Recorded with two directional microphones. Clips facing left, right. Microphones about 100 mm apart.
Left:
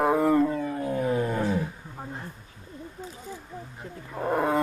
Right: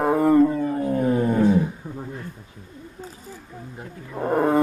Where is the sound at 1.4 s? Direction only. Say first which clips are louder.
Right 8 dB; 20° right (ahead or behind).